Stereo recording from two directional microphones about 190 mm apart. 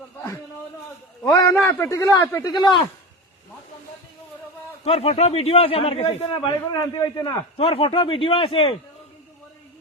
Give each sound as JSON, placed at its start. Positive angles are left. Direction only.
{"t": 1.2, "sound": "a sound", "side_deg": 15}
{"t": 1.6, "sound": "a man's voice", "side_deg": 15}
{"t": 4.8, "sound": "a man's voice", "side_deg": 35}
{"t": 7.5, "sound": "a man's voice", "side_deg": 30}